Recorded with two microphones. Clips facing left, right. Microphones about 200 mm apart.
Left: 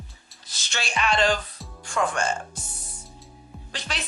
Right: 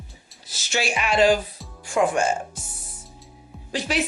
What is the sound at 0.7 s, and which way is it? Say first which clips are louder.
Speech: right 3 dB; 5° right (ahead or behind).